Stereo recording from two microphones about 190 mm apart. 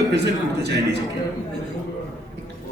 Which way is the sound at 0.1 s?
60° right (ahead or behind).